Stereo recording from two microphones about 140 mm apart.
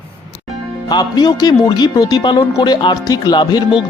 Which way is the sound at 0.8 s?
25° left (ahead or behind).